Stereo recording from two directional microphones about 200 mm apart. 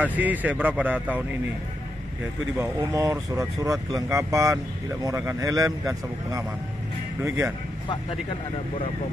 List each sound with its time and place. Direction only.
0.0 s speech: 10° right (ahead or behind)
2.5 s speech: 15° right (ahead or behind)